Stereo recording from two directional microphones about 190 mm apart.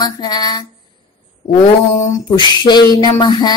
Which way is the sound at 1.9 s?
20° left (ahead or behind).